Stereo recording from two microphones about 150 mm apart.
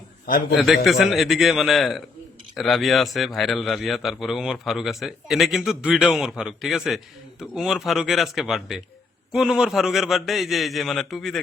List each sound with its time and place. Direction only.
0.5 s a man's voice: centre (ahead or behind)